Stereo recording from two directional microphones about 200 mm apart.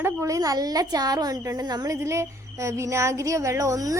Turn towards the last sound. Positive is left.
turn(degrees=-15)  # may be behind; listen again after turning